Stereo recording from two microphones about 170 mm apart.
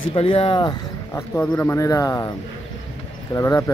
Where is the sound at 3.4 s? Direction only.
20° left (ahead or behind).